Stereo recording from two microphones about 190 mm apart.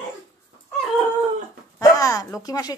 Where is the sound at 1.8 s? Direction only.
20° left (ahead or behind).